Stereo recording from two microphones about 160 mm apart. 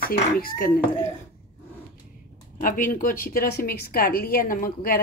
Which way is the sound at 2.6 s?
55° left (ahead or behind).